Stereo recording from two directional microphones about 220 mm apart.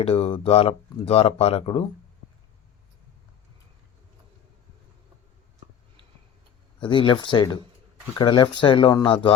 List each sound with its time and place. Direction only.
0.0 s speech: 25° left (ahead or behind)
6.7 s speech: 20° left (ahead or behind)